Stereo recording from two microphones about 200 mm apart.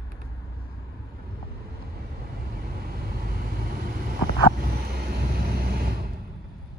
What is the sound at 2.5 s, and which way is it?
Vehicle, 50° right (ahead or behind).